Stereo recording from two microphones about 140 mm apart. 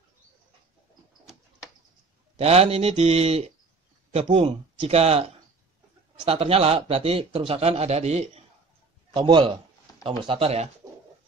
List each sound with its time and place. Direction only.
2.3 s a man's voice: 45° right (ahead or behind)
6.2 s a man's voice: 45° right (ahead or behind)
9.1 s a man's voice: 35° right (ahead or behind)